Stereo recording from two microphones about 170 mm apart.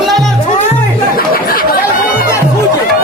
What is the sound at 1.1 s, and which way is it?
Speech, 55° left (ahead or behind).